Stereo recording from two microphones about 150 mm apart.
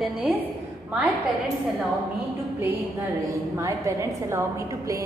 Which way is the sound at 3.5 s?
20° right (ahead or behind).